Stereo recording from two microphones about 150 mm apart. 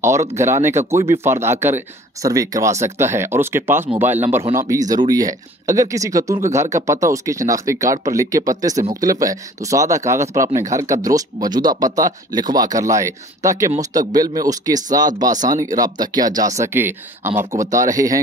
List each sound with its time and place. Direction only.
0.0 s speech: 20° right (ahead or behind)